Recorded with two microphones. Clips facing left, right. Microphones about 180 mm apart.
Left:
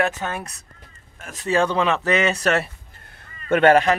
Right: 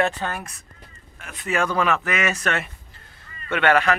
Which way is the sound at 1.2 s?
40° left (ahead or behind).